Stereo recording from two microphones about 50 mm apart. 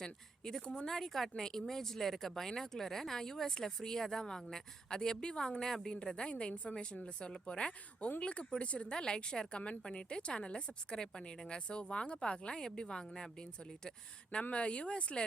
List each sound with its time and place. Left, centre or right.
0.0 s a woman's voice: centre
14.5 s a woman's voice: left